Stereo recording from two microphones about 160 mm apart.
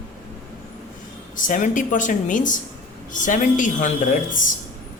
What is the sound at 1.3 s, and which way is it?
A woman's voice, 55° left (ahead or behind).